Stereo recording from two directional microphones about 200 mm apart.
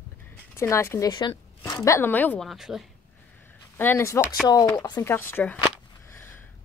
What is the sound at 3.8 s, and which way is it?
A woman's voice, 10° left (ahead or behind).